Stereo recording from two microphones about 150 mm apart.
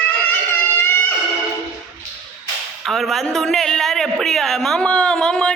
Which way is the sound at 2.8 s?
Centre (ahead or behind).